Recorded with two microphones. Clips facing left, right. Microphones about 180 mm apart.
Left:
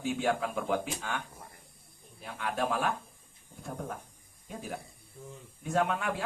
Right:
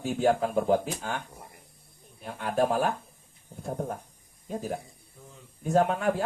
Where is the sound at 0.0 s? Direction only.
40° right (ahead or behind).